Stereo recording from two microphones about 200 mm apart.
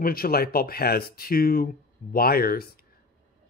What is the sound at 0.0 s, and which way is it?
Speech, 50° left (ahead or behind).